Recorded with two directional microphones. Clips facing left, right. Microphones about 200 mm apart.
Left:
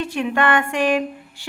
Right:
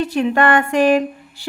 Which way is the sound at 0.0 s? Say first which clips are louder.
Right 4 dB; 40° right (ahead or behind).